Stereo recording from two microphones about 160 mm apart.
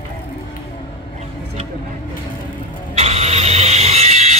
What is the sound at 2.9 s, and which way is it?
Vehicle, 40° right (ahead or behind).